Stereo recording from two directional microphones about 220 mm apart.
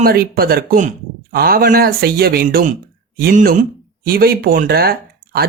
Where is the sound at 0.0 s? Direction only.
45° right (ahead or behind).